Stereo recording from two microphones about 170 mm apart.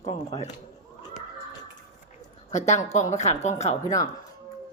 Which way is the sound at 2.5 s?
45° left (ahead or behind).